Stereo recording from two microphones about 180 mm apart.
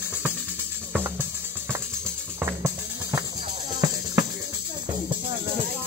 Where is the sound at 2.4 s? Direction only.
15° right (ahead or behind).